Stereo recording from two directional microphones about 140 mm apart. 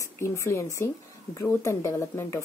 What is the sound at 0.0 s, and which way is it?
Speech, 20° left (ahead or behind).